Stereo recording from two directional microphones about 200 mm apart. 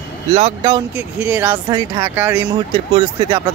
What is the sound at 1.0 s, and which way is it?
Speech, 10° right (ahead or behind).